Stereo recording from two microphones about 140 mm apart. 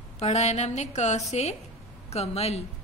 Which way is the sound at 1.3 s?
50° left (ahead or behind).